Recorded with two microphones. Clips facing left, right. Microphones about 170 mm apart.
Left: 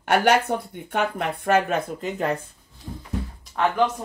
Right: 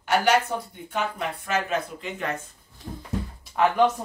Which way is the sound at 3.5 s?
Centre (ahead or behind).